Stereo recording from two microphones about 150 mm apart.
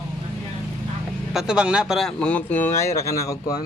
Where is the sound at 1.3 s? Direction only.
5° right (ahead or behind).